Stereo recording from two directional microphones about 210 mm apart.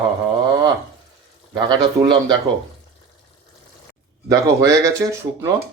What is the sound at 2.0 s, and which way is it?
Speech, 20° right (ahead or behind).